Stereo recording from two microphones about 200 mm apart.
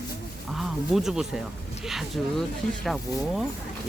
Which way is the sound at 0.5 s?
Centre (ahead or behind).